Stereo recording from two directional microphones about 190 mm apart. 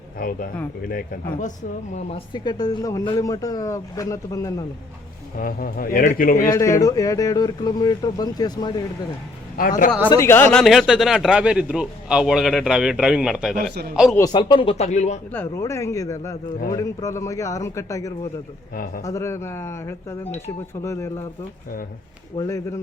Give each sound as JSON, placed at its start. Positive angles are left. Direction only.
{"t": 0.2, "sound": "speech", "side_deg": 50}
{"t": 5.4, "sound": "speech", "side_deg": 50}
{"t": 6.5, "sound": "speech", "side_deg": 15}
{"t": 9.6, "sound": "speech", "side_deg": 45}
{"t": 10.1, "sound": "a man's voice", "side_deg": 15}
{"t": 14.2, "sound": "speech", "side_deg": 25}
{"t": 15.3, "sound": "speech", "side_deg": 10}
{"t": 18.7, "sound": "speech", "side_deg": 50}
{"t": 19.0, "sound": "speech", "side_deg": 15}
{"t": 22.4, "sound": "speech", "side_deg": 15}